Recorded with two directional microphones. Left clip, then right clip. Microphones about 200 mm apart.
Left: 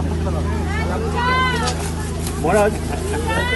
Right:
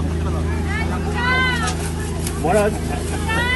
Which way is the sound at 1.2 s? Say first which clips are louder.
Even; 30° left (ahead or behind).